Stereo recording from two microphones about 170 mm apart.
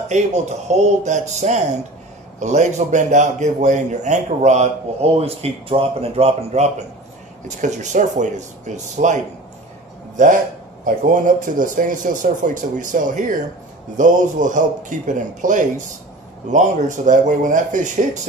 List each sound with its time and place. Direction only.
0.1 s a man's voice: 40° right (ahead or behind)